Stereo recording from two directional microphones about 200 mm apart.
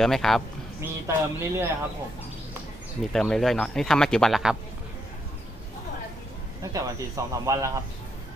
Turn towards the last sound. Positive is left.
turn(degrees=-15)  # may be behind; listen again after turning